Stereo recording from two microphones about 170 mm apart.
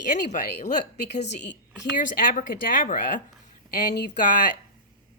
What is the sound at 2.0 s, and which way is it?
Speech, 50° left (ahead or behind).